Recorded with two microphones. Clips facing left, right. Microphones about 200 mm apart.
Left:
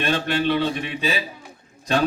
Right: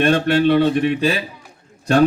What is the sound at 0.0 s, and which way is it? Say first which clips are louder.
A man's voice: right 7 dB; 60° right (ahead or behind).